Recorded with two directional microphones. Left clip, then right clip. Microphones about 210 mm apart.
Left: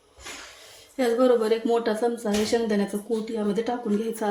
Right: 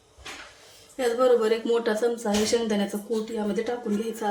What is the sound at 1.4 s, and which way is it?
A woman's voice, 25° left (ahead or behind).